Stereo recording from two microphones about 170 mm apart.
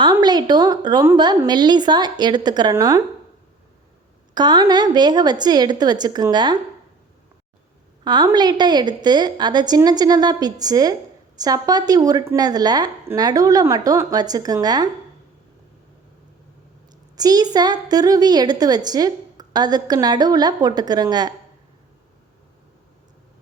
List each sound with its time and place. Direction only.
0.0 s a woman's voice: 25° right (ahead or behind)
4.4 s a woman's voice: 25° right (ahead or behind)
8.0 s a woman's voice: 25° right (ahead or behind)
17.2 s a woman's voice: 20° right (ahead or behind)